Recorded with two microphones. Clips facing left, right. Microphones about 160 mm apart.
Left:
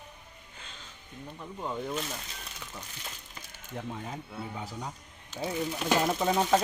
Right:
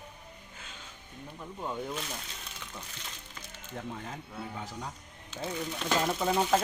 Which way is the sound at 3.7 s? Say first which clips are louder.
Left 2 dB; 10° left (ahead or behind).